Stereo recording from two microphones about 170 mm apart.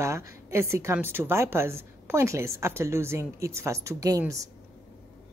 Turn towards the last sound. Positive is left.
turn(degrees=-20)  # may be behind; listen again after turning